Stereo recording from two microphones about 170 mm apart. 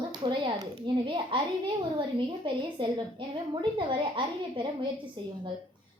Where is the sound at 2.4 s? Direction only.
30° right (ahead or behind).